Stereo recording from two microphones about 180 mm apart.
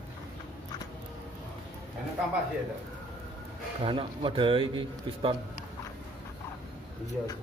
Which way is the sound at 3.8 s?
30° right (ahead or behind).